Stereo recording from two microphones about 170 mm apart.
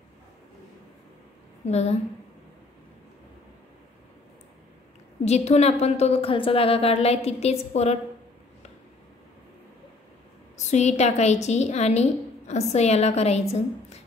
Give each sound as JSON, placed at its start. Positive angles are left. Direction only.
{"t": 1.7, "sound": "a woman's voice", "side_deg": 40}
{"t": 5.2, "sound": "a woman's voice", "side_deg": 40}
{"t": 10.6, "sound": "a woman's voice", "side_deg": 40}